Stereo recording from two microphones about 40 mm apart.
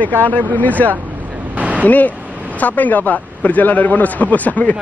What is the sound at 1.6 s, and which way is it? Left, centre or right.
Vehicle, right.